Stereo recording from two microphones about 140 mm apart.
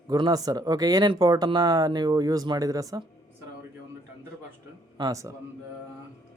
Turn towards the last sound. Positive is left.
turn(degrees=-25)  # may be behind; listen again after turning